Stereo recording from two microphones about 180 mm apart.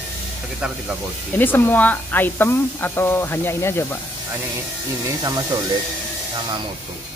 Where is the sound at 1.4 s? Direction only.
10° left (ahead or behind).